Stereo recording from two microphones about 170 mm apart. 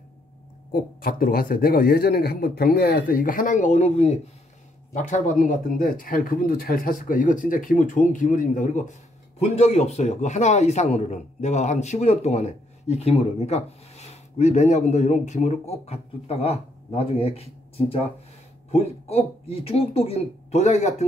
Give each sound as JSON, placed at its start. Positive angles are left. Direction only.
{"t": 0.7, "sound": "a man's voice", "side_deg": 60}